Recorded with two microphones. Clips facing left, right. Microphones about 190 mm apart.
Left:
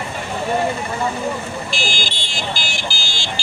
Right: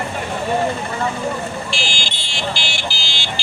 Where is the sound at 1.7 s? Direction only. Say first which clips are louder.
Left 1 dB; 40° left (ahead or behind).